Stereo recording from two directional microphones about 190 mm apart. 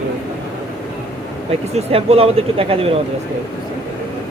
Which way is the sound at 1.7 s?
30° right (ahead or behind).